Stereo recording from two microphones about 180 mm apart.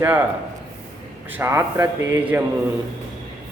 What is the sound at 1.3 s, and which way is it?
A man's voice, 15° right (ahead or behind).